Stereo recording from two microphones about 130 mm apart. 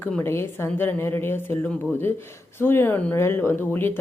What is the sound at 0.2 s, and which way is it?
Speech, 20° left (ahead or behind).